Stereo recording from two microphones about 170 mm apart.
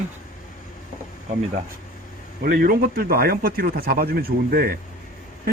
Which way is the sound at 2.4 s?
60° right (ahead or behind).